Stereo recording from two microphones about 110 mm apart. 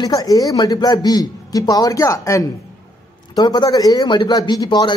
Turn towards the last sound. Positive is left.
turn(degrees=40)  # may be behind; listen again after turning